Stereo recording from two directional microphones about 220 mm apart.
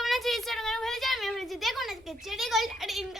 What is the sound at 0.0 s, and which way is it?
A woman's voice, centre (ahead or behind).